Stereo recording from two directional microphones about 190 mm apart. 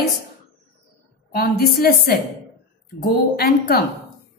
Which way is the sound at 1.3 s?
55° left (ahead or behind).